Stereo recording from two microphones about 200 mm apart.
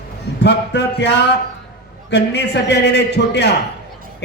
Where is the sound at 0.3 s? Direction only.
60° left (ahead or behind).